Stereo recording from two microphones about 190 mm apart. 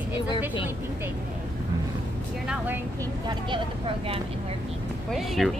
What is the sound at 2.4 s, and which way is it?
Vehicle, 10° right (ahead or behind).